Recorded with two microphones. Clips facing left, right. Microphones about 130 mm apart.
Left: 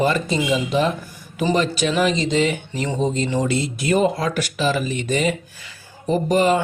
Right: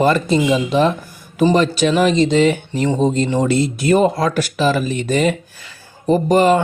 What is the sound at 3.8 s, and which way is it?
Speech, 35° right (ahead or behind).